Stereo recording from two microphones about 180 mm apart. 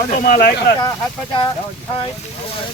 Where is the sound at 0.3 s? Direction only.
60° left (ahead or behind).